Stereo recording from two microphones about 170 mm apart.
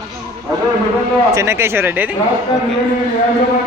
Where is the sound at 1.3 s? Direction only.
15° right (ahead or behind).